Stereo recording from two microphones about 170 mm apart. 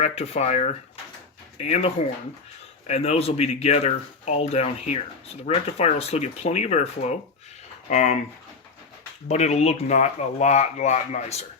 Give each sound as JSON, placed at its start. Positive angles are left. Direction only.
{"t": 0.0, "sound": "speech", "side_deg": 40}
{"t": 9.3, "sound": "speech", "side_deg": 40}